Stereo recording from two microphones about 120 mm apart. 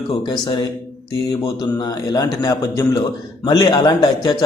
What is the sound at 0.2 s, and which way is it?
A man's voice, 40° left (ahead or behind).